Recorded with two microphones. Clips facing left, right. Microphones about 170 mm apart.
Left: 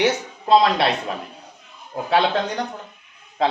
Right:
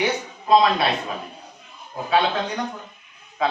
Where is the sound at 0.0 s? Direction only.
75° left (ahead or behind).